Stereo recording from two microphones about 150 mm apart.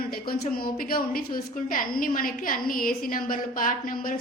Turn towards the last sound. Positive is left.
turn(degrees=70)  # may be behind; listen again after turning